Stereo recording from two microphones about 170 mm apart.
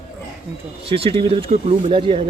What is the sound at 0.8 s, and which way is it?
Speech, 35° right (ahead or behind).